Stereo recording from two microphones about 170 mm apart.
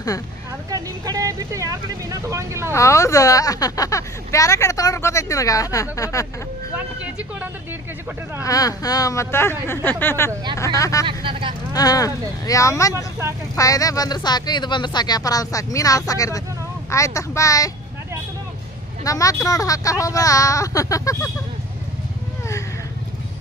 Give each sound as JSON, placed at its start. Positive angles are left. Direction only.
{"t": 0.7, "sound": "speech", "side_deg": -20}
{"t": 2.7, "sound": "speech", "side_deg": 15}
{"t": 8.4, "sound": "speech", "side_deg": 20}
{"t": 11.1, "sound": "speech", "side_deg": -30}
{"t": 11.7, "sound": "speech", "side_deg": 20}
{"t": 19.0, "sound": "speech", "side_deg": 20}